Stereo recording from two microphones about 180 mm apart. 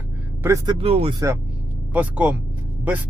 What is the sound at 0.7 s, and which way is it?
Speech, 35° right (ahead or behind).